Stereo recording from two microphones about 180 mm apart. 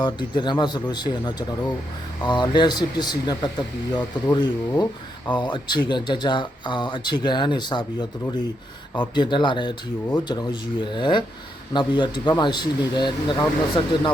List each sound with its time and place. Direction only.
0.0 s speech: 25° left (ahead or behind)
9.1 s speech: 25° left (ahead or behind)